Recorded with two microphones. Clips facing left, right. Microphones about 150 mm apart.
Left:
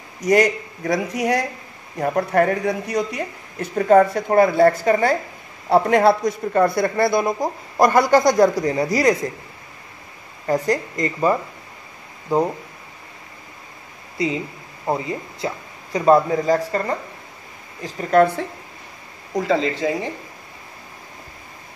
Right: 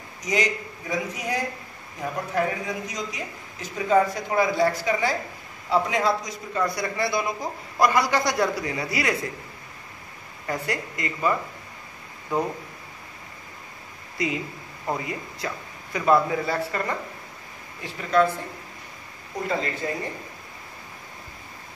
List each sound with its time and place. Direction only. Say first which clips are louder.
0.2 s a man's voice: left 9 dB; 65° left (ahead or behind)
2.0 s speech: left 8 dB; 65° left (ahead or behind); by 9.1 s 45° left (ahead or behind)
10.4 s speech: left 9 dB; 35° left (ahead or behind)
14.1 s speech: left 5 dB; 30° left (ahead or behind)
18.1 s speech: left 6 dB; 50° left (ahead or behind)
19.3 s speech: left 8 dB; 90° left